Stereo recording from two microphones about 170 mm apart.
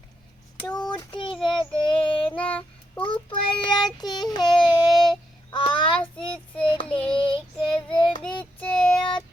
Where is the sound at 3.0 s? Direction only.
30° left (ahead or behind).